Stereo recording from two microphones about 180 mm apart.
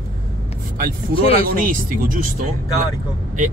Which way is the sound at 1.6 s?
50° right (ahead or behind).